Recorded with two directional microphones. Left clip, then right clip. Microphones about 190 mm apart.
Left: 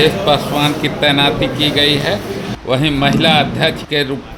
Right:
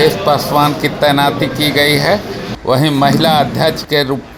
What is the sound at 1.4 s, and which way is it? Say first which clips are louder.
Speech: right 1 dB; 90° right.